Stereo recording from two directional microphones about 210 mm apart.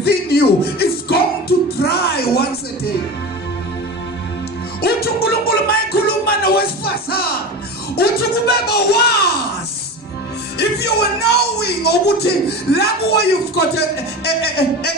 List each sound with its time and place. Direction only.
0.0 s music: 50° left (ahead or behind)
4.8 s music: 50° left (ahead or behind)
7.9 s speech: 50° left (ahead or behind)
10.6 s speech: 50° left (ahead or behind)